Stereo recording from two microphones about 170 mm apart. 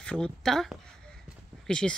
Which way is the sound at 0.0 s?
5° left (ahead or behind).